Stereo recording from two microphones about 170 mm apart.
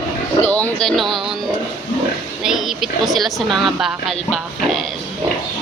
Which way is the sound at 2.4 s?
Centre (ahead or behind).